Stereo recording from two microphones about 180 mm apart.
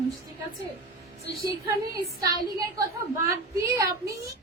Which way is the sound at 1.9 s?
20° right (ahead or behind).